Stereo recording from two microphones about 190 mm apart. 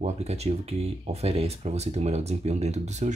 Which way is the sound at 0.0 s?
35° right (ahead or behind).